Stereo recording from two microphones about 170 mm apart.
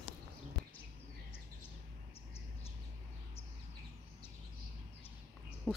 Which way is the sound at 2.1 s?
35° left (ahead or behind).